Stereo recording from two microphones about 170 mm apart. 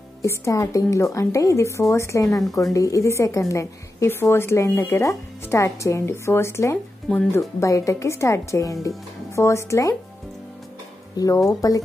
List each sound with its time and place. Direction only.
0.2 s speech: 20° left (ahead or behind)
11.1 s speech: 20° left (ahead or behind)